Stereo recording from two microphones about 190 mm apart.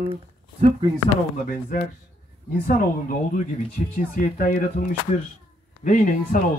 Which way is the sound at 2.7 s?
50° left (ahead or behind).